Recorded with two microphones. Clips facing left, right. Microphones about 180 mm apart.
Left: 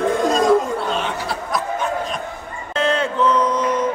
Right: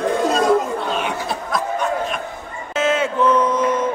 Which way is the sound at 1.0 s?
20° right (ahead or behind).